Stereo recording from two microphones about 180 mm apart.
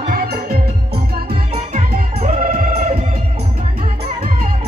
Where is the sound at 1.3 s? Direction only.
35° right (ahead or behind).